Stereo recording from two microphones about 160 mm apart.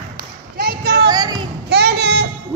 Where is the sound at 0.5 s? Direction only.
70° right (ahead or behind).